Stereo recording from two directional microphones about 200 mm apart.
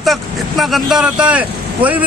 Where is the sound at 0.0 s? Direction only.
Centre (ahead or behind).